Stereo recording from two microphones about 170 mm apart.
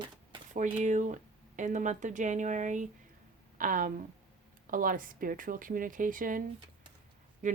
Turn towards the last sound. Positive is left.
turn(degrees=-45)  # may be behind; listen again after turning